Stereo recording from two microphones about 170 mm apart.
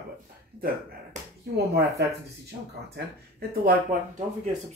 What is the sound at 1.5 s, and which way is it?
Speech, 80° right.